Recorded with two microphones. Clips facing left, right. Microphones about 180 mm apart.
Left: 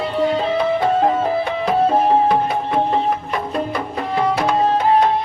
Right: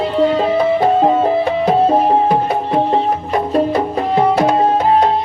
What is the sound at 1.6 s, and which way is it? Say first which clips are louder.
Music: right 2 dB; 30° right (ahead or behind).